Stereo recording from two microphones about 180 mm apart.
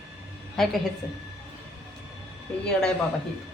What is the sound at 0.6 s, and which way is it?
Speech, centre (ahead or behind).